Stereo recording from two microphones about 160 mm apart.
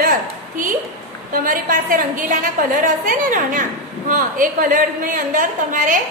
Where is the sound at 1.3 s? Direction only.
60° right (ahead or behind).